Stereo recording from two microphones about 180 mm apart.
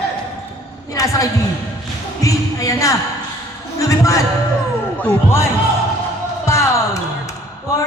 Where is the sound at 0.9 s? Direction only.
20° left (ahead or behind).